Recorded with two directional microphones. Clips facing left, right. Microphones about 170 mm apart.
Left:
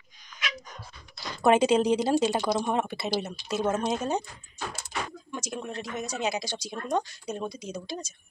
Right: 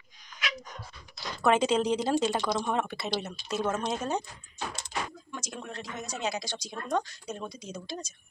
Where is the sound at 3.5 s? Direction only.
20° left (ahead or behind).